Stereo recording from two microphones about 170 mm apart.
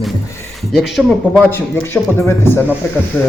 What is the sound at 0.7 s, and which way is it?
Speech, centre (ahead or behind).